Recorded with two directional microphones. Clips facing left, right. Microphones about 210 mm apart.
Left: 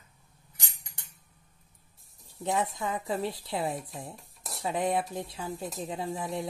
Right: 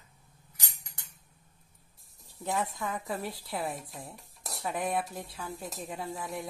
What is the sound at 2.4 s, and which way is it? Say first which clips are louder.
Speech: left 3 dB; 20° left (ahead or behind).